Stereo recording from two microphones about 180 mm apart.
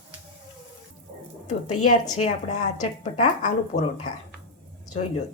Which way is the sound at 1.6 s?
40° left (ahead or behind).